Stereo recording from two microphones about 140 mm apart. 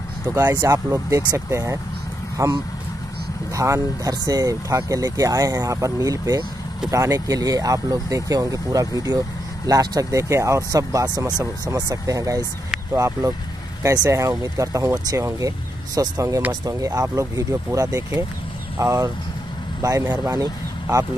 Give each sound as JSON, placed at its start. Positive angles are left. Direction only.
{"t": 0.3, "sound": "speech", "side_deg": -20}